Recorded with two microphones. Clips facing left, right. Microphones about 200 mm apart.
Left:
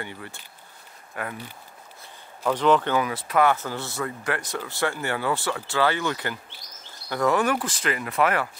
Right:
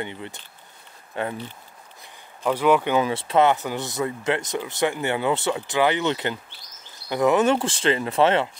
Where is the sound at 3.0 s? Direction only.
25° right (ahead or behind).